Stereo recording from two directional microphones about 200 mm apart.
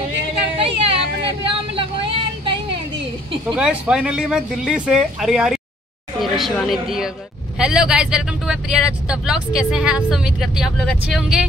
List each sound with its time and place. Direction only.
0.6 s vehicle: 25° right (ahead or behind)
3.5 s a woman's voice: 5° right (ahead or behind)